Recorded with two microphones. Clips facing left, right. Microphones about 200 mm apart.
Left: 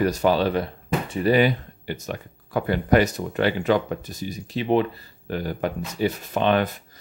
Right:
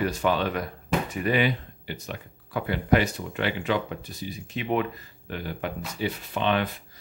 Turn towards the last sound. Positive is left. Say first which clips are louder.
# left 5 dB
turn(degrees=45)  # may be behind; listen again after turning